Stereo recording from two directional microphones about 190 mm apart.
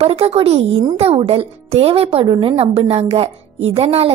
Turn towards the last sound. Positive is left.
turn(degrees=-30)  # may be behind; listen again after turning